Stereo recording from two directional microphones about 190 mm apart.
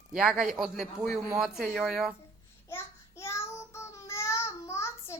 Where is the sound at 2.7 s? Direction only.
15° left (ahead or behind).